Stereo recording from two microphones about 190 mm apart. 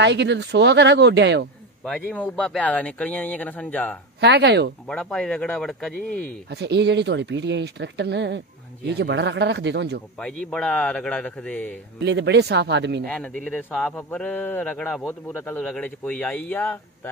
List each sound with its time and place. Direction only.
0.0 s speech: 65° right (ahead or behind)
1.9 s speech: 5° left (ahead or behind)
4.2 s speech: 60° right (ahead or behind)
4.8 s speech: 5° left (ahead or behind)
6.5 s speech: 60° right (ahead or behind)
10.2 s speech: 5° left (ahead or behind)
12.0 s speech: 65° right (ahead or behind)
13.0 s speech: 5° left (ahead or behind)